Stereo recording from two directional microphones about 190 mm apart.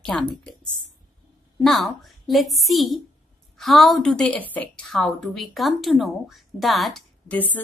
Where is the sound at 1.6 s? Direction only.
Centre (ahead or behind).